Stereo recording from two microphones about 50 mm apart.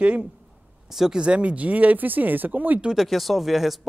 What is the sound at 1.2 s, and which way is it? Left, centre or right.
Speech, right.